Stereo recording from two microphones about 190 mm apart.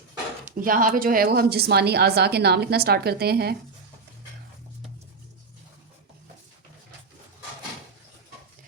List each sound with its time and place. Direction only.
0.6 s speech: 45° right (ahead or behind)